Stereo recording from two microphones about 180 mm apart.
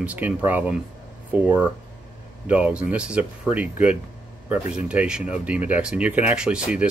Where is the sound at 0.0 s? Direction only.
10° right (ahead or behind).